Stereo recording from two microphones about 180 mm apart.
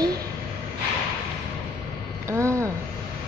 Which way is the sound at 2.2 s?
15° right (ahead or behind).